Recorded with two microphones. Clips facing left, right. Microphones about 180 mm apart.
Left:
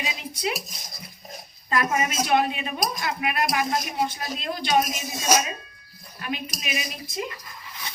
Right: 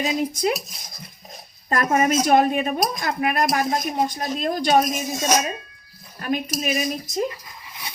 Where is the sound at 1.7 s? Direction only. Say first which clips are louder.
Right 5 dB; 40° right (ahead or behind).